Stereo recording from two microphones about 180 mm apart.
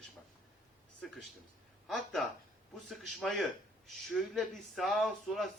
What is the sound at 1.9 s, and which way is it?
Speech, centre (ahead or behind).